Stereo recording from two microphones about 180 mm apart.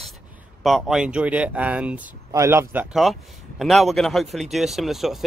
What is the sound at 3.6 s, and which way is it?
Speech, centre (ahead or behind).